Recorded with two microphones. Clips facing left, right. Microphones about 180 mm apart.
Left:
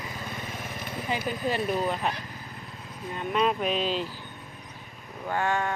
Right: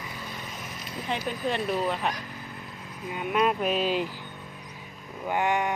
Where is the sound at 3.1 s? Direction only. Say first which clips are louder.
Right 1 dB; 5° right (ahead or behind).